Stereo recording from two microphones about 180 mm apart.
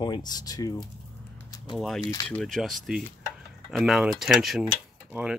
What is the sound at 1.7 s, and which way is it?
Speech, centre (ahead or behind).